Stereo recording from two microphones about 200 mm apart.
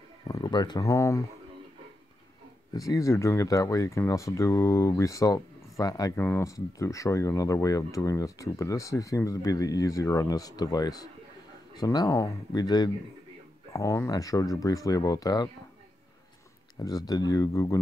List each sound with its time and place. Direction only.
0.3 s speech: 20° left (ahead or behind)
2.7 s speech: 15° left (ahead or behind)
16.8 s speech: 20° left (ahead or behind)